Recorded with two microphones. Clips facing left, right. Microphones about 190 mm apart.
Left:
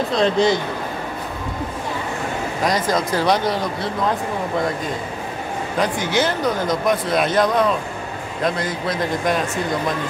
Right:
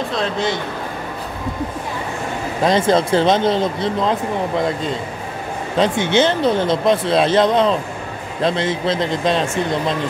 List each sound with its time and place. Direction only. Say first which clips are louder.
0.1 s speech: left 7 dB; centre (ahead or behind)
2.6 s speech: right 6 dB; 25° right (ahead or behind)
5.8 s speech: right 5 dB; 25° right (ahead or behind)